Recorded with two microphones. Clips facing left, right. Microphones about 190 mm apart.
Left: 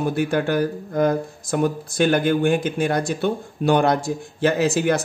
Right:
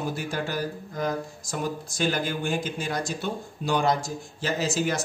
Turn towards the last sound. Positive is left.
turn(degrees=60)  # may be behind; listen again after turning